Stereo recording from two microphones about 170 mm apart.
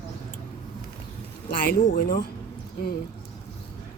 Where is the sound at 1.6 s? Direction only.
60° left (ahead or behind).